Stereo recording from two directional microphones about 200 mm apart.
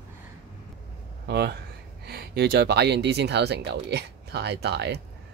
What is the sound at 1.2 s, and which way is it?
Speech, 55° right (ahead or behind).